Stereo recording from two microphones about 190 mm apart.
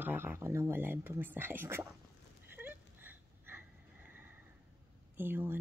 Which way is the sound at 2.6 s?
10° right (ahead or behind).